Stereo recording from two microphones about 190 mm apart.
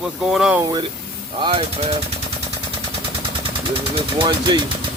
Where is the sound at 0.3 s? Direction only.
5° right (ahead or behind).